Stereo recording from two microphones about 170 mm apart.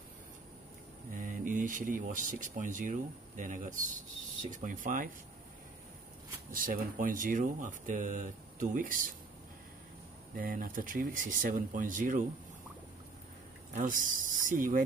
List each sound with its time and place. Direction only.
1.1 s speech: 50° right (ahead or behind)
6.5 s speech: 55° right (ahead or behind)
10.3 s speech: 55° right (ahead or behind)
13.7 s speech: 50° right (ahead or behind)